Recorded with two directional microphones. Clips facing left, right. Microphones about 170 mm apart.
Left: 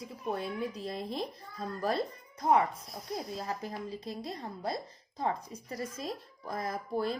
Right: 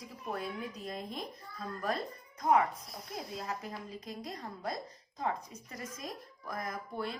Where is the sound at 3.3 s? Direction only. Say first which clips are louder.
Left 3 dB; 35° left (ahead or behind).